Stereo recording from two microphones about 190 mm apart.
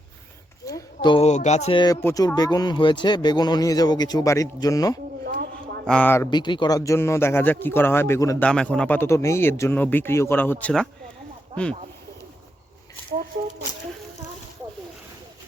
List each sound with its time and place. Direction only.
0.6 s a sound: 15° left (ahead or behind)
1.1 s music: 35° left (ahead or behind)
2.0 s speech: 15° left (ahead or behind)
5.2 s a sound: 55° right (ahead or behind)
5.8 s a man's voice: 5° left (ahead or behind)
6.3 s a man's voice: 25° left (ahead or behind)
8.4 s a man's voice: 5° left (ahead or behind)